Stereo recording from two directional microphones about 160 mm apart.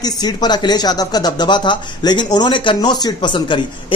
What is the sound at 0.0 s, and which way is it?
Speech, 25° left (ahead or behind).